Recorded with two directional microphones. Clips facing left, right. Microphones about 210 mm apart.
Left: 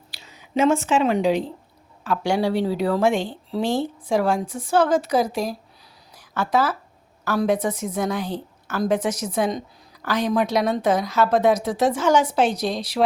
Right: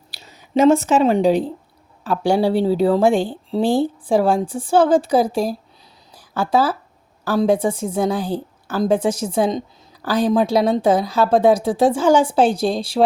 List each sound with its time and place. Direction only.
0.1 s a woman's voice: 40° right (ahead or behind)